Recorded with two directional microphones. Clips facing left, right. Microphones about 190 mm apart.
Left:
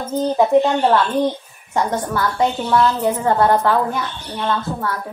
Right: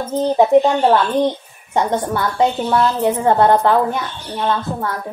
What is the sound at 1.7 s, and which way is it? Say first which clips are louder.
A woman's voice: right 2 dB; 20° right (ahead or behind).